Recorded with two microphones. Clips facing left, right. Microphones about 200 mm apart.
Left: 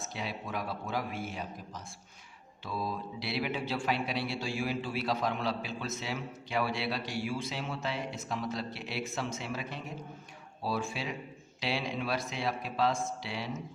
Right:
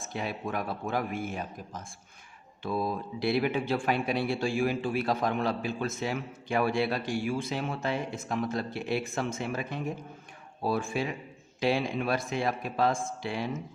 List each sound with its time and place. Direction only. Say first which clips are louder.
0.0 s speech: right 5 dB; 50° right (ahead or behind)